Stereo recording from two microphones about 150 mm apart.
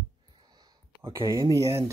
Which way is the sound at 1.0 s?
20° right (ahead or behind).